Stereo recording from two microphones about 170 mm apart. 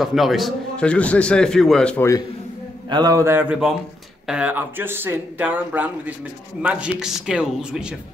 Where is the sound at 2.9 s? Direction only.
20° right (ahead or behind).